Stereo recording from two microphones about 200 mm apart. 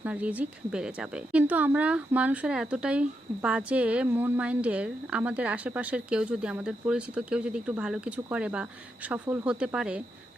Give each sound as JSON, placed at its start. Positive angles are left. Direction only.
{"t": 0.0, "sound": "speech", "side_deg": -5}